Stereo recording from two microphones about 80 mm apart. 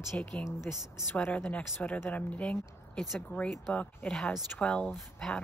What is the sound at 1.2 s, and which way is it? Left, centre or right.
Speech, left.